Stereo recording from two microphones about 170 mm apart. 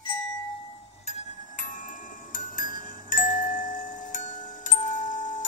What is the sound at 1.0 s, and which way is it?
Music, 50° left (ahead or behind).